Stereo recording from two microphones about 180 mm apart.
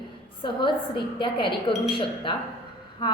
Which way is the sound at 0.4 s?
25° left (ahead or behind).